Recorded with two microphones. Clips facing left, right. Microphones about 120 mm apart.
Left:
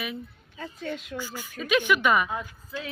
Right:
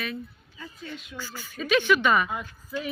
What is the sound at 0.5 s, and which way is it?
Speech, 55° left (ahead or behind).